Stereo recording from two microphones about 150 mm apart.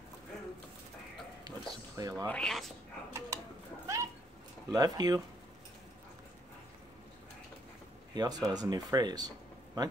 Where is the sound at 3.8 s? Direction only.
20° right (ahead or behind).